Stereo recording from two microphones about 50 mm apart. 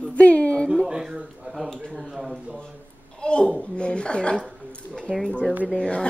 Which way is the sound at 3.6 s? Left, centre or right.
Centre.